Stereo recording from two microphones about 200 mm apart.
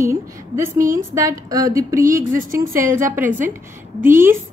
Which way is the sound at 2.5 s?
45° right (ahead or behind).